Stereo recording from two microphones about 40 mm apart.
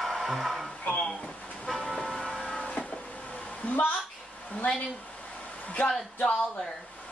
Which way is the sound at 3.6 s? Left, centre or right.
Left.